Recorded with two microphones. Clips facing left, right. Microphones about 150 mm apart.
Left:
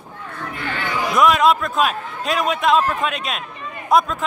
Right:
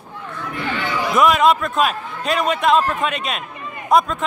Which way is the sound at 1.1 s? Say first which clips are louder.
Even; centre (ahead or behind).